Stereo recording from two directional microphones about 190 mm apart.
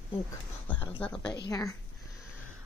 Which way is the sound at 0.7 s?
25° left (ahead or behind).